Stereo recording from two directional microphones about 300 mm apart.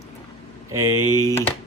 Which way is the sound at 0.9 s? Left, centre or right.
Right.